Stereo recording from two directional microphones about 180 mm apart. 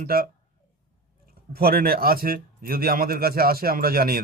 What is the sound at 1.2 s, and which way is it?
Speech, 55° right (ahead or behind).